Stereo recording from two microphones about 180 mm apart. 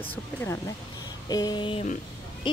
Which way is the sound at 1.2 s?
20° left (ahead or behind).